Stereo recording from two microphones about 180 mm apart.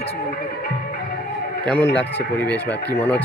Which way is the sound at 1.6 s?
10° left (ahead or behind).